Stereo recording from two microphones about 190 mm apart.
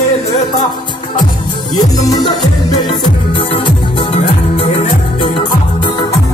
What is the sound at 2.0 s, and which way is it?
Music, 20° left (ahead or behind).